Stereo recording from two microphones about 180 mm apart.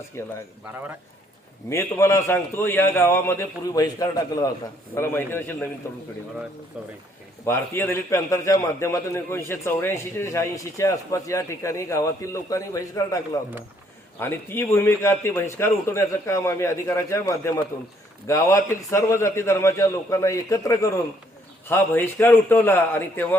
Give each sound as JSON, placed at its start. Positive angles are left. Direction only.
{"t": 0.2, "sound": "a man's voice", "side_deg": 15}
{"t": 1.7, "sound": "a man's voice", "side_deg": 15}
{"t": 6.8, "sound": "speech", "side_deg": -5}
{"t": 7.4, "sound": "a man's voice", "side_deg": 15}